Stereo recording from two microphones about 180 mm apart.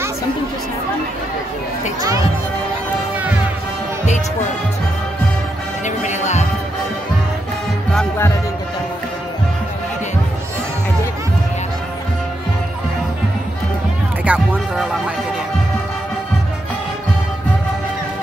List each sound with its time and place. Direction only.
5.9 s music: 40° left (ahead or behind)
14.2 s music: 10° right (ahead or behind)